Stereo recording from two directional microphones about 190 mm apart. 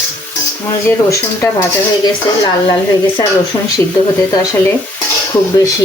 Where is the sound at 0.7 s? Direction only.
15° left (ahead or behind).